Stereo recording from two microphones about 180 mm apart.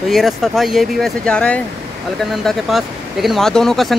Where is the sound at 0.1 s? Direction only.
Centre (ahead or behind).